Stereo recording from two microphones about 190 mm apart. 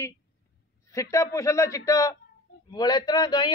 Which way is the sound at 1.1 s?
15° left (ahead or behind).